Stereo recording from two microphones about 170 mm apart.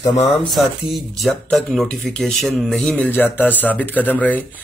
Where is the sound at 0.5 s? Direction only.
Centre (ahead or behind).